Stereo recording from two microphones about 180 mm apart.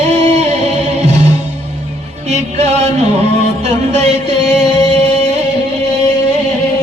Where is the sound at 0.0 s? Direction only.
40° right (ahead or behind).